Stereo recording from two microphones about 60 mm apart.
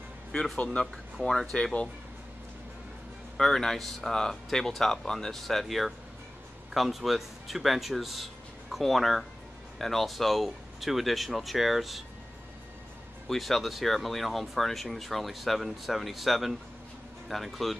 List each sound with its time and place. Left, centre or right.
0.8 s speech: centre
1.1 s speech: centre
3.3 s speech: centre
13.3 s speech: centre